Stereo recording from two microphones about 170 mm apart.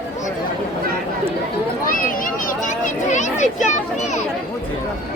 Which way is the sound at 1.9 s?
55° left (ahead or behind).